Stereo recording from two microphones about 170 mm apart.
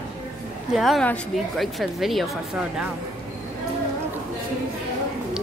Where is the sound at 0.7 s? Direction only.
Centre (ahead or behind).